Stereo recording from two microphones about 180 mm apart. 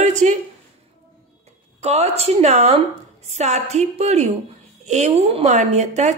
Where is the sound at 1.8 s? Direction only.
35° right (ahead or behind).